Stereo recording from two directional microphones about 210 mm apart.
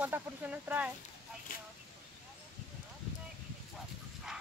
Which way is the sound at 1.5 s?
40° left (ahead or behind).